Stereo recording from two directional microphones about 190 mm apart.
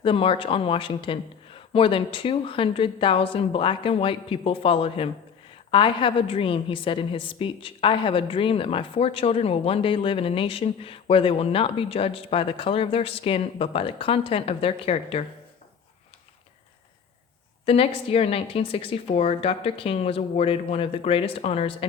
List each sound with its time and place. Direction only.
0.0 s a woman's voice: 30° left (ahead or behind)
17.7 s a woman's voice: 30° left (ahead or behind)